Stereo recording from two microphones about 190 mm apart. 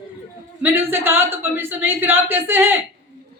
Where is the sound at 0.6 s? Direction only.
10° right (ahead or behind).